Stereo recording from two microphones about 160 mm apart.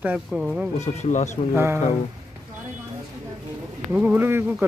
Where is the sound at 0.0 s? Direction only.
5° right (ahead or behind).